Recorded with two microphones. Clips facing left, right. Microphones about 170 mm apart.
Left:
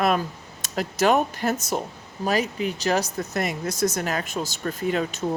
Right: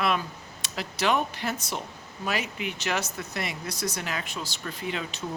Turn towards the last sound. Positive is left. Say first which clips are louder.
# left 8 dB
turn(degrees=45)  # may be behind; listen again after turning